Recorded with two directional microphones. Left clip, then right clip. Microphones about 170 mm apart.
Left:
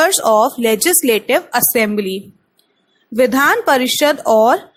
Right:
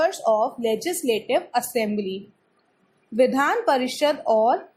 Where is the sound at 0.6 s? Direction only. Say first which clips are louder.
Left 9 dB; 35° left (ahead or behind).